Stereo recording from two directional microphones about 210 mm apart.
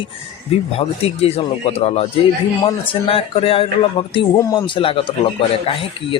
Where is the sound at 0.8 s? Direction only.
30° left (ahead or behind).